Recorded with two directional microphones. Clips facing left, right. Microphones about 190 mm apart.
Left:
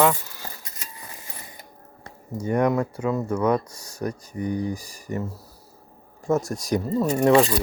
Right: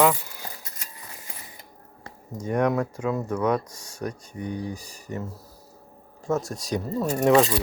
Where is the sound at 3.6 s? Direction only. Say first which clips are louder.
Left 2 dB; 35° left (ahead or behind).